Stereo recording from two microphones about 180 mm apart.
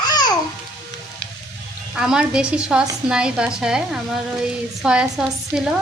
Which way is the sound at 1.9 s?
5° right (ahead or behind).